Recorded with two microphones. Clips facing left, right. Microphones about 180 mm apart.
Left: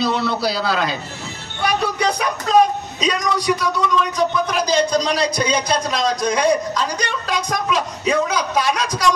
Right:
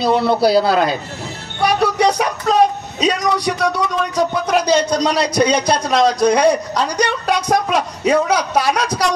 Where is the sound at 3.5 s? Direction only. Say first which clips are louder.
Right 1 dB; 65° right (ahead or behind).